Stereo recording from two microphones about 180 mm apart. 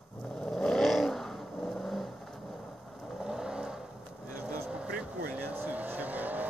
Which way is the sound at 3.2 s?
5° right (ahead or behind).